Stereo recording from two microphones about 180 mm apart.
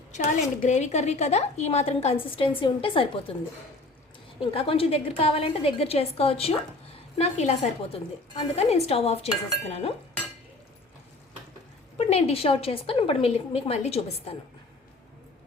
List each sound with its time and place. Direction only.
0.1 s a woman's voice: 40° left (ahead or behind)
4.4 s a woman's voice: 30° left (ahead or behind)
8.5 s a woman's voice: 35° left (ahead or behind)
11.9 s a woman's voice: 35° left (ahead or behind)